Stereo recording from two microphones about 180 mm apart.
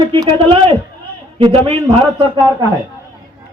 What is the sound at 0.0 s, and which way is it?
A man's voice, 25° right (ahead or behind).